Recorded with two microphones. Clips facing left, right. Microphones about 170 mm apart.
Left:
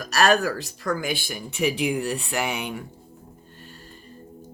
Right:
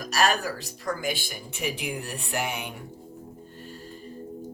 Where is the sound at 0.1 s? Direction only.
75° left (ahead or behind).